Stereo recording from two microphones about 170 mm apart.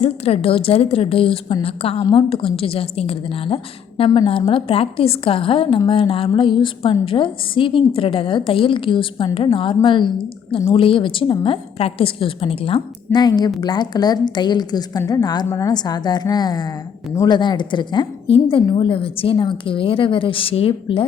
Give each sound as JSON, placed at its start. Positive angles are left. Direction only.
{"t": 0.0, "sound": "a woman's voice", "side_deg": 35}